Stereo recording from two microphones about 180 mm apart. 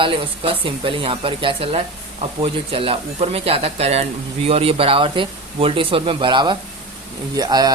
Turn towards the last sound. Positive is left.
turn(degrees=-20)  # may be behind; listen again after turning